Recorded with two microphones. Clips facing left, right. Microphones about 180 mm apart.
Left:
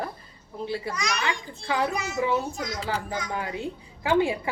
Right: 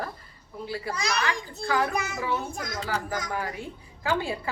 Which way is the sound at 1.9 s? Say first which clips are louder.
Even; 55° right (ahead or behind).